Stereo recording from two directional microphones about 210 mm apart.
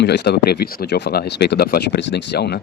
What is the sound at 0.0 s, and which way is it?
Speech, 55° left (ahead or behind).